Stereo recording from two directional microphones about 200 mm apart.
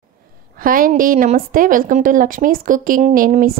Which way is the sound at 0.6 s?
45° right (ahead or behind).